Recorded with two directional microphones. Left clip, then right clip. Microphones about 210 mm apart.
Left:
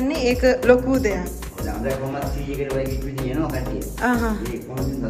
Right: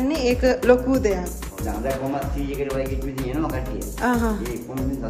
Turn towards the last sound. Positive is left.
turn(degrees=-15)  # may be behind; listen again after turning